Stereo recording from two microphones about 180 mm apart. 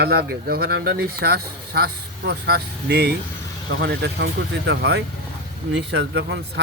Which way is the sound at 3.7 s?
75° right (ahead or behind).